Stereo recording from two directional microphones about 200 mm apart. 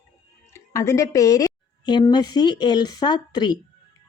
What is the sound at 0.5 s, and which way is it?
A woman's voice, 15° left (ahead or behind).